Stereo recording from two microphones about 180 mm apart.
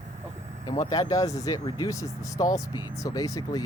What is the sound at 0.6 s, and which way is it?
Speech, 20° left (ahead or behind).